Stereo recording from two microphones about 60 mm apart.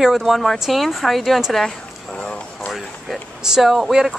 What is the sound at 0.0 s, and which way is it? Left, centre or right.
A woman's voice, centre.